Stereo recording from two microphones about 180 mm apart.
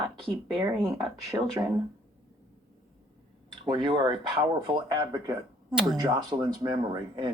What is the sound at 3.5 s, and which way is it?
Speech, 25° right (ahead or behind).